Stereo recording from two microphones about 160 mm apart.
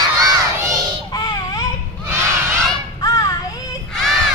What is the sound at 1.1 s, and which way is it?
Music, 25° left (ahead or behind).